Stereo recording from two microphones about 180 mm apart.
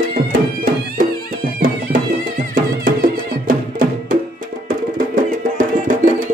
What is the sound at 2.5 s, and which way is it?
Music, 50° right (ahead or behind).